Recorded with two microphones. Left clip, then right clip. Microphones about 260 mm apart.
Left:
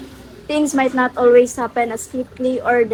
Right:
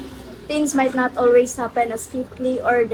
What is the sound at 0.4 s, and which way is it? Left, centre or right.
A woman's voice, left.